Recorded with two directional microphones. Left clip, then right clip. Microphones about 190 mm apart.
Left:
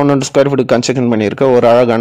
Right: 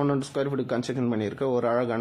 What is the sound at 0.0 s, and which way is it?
A man's voice, 40° left (ahead or behind).